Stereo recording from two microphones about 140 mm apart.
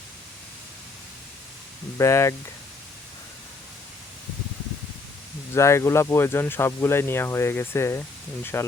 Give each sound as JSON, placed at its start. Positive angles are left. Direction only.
{"t": 2.0, "sound": "speech", "side_deg": 20}
{"t": 5.5, "sound": "speech", "side_deg": 20}